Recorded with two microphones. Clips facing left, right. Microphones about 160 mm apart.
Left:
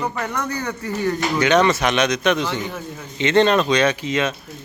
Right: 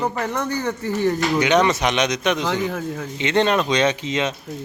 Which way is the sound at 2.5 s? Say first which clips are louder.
Right 4 dB; 90° right.